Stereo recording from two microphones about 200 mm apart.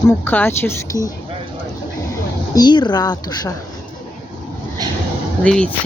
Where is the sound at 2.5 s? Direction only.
20° left (ahead or behind).